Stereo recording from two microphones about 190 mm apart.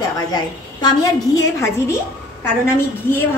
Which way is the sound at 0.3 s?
20° left (ahead or behind).